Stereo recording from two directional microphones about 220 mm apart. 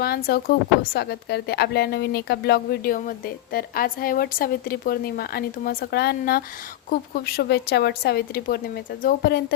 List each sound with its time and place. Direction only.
0.0 s a woman's voice: 45° left (ahead or behind)